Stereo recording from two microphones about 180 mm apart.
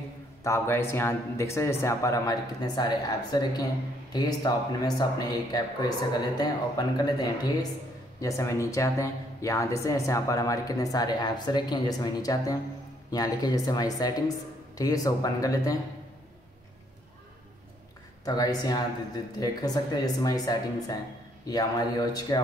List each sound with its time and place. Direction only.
0.4 s a man's voice: 15° left (ahead or behind)
18.2 s speech: 20° left (ahead or behind)